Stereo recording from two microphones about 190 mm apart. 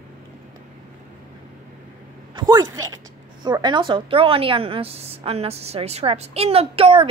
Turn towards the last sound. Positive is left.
turn(degrees=-30)  # may be behind; listen again after turning